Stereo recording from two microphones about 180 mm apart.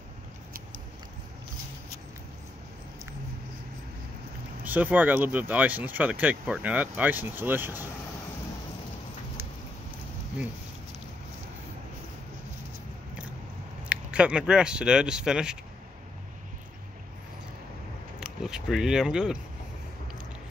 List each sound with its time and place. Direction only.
4.6 s speech: 10° right (ahead or behind)
13.8 s speech: 5° right (ahead or behind)
18.2 s a sound: 5° right (ahead or behind)